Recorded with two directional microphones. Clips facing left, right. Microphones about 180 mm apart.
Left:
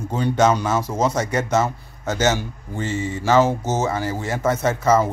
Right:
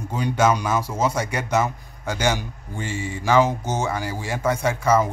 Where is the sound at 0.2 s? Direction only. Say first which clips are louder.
Left 2 dB; 10° right (ahead or behind).